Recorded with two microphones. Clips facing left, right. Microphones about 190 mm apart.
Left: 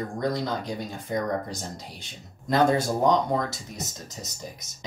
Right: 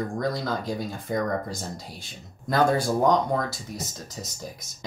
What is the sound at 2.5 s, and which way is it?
Speech, 20° left (ahead or behind).